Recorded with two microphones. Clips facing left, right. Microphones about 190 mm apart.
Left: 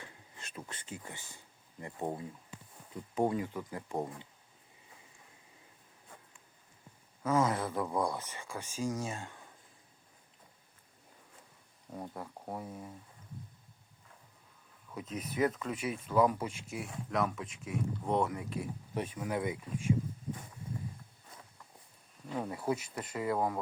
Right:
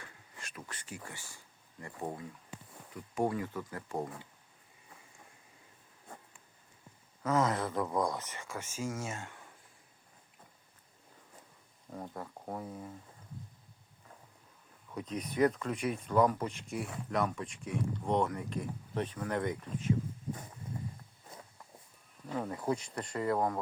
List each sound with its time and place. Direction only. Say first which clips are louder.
0.0 s a sound: even; 25° left (ahead or behind)
1.0 s speech: even; 20° left (ahead or behind)
7.2 s speech: even; 10° left (ahead or behind)
11.9 s speech: even; 5° left (ahead or behind)
14.9 s speech: right 2 dB; 5° left (ahead or behind)
22.4 s speech: even; 10° left (ahead or behind)